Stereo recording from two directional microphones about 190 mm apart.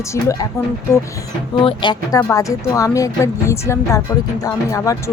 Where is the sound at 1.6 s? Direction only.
25° left (ahead or behind).